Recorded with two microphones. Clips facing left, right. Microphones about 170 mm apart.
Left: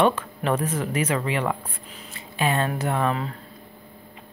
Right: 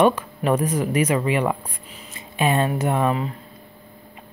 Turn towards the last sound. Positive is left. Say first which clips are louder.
# right 3 dB
turn(degrees=-10)  # may be behind; listen again after turning